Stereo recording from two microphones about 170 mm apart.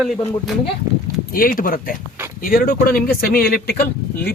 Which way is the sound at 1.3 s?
55° left (ahead or behind).